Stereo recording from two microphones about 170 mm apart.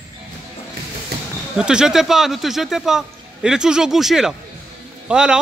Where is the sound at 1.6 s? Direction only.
5° right (ahead or behind).